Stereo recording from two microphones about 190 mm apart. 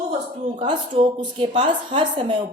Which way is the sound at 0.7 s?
25° right (ahead or behind).